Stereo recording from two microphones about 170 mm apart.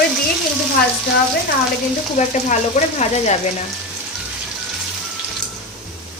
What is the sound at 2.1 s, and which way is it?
A woman's voice, 45° left (ahead or behind).